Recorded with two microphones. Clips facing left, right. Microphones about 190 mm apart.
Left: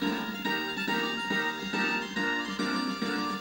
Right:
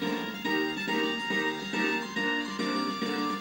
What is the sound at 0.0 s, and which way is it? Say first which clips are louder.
Music: even; 20° right (ahead or behind).